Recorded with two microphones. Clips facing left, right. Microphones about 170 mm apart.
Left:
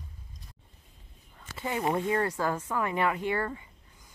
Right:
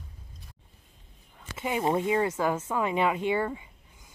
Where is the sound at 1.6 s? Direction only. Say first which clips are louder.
Right 2 dB; 20° right (ahead or behind).